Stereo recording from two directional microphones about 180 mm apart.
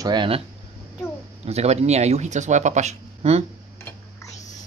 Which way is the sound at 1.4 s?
35° right (ahead or behind).